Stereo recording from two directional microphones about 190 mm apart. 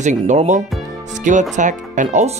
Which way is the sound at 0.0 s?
40° right (ahead or behind).